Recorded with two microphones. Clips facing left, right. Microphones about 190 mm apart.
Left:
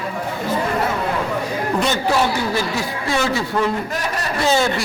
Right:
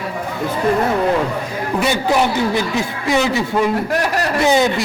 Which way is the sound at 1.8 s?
15° right (ahead or behind).